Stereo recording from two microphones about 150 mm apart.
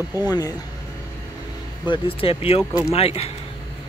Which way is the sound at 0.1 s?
25° left (ahead or behind).